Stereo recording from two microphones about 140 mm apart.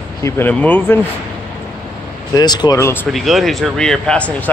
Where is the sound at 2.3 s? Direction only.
30° left (ahead or behind).